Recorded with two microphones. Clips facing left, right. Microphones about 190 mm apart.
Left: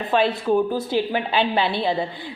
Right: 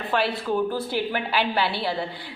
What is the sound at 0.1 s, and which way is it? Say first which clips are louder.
A woman's voice: left 5 dB; 20° left (ahead or behind).